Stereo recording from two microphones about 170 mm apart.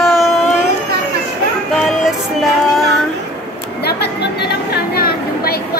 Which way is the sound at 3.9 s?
70° left (ahead or behind).